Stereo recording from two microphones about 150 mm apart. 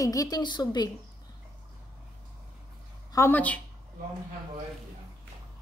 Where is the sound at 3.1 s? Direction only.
15° left (ahead or behind).